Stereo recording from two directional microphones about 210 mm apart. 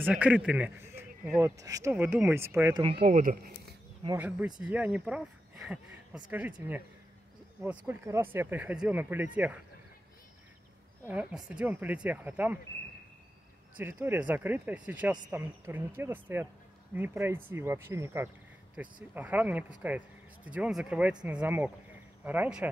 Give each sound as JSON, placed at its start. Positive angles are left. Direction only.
{"t": 0.0, "sound": "speech", "side_deg": -5}
{"t": 2.8, "sound": "speech", "side_deg": -25}
{"t": 3.2, "sound": "speech", "side_deg": -40}
{"t": 4.6, "sound": "speech", "side_deg": -5}
{"t": 7.8, "sound": "speech", "side_deg": -10}
{"t": 11.1, "sound": "speech", "side_deg": -5}
{"t": 13.7, "sound": "speech", "side_deg": -10}